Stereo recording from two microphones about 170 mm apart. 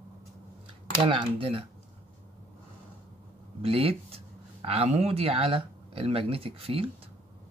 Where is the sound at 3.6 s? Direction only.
35° right (ahead or behind).